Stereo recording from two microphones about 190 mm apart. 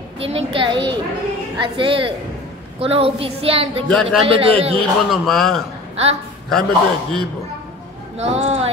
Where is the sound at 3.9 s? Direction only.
5° left (ahead or behind).